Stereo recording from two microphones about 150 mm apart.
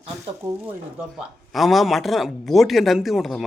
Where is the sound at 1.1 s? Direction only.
Centre (ahead or behind).